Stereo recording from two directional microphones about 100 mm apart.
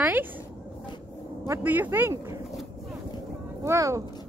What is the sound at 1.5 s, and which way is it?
Speech, 20° right (ahead or behind).